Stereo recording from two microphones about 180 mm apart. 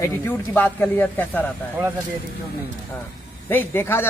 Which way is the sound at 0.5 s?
10° left (ahead or behind).